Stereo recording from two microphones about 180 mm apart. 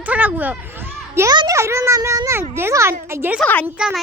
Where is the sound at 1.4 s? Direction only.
15° right (ahead or behind).